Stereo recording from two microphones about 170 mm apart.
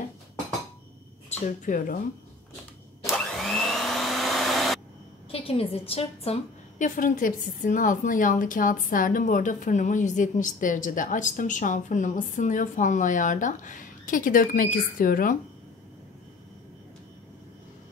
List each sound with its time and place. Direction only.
1.3 s a woman's voice: 50° left (ahead or behind)
3.1 s vacuum cleaner: centre (ahead or behind)
5.3 s a woman's voice: 35° left (ahead or behind); by 15.3 s 55° left (ahead or behind)